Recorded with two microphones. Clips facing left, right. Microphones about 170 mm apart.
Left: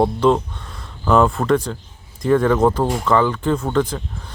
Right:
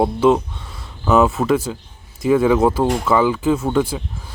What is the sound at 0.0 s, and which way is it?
Speech, 5° right (ahead or behind).